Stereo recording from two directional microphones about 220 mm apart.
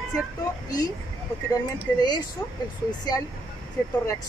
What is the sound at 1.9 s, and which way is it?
Speech, 20° left (ahead or behind).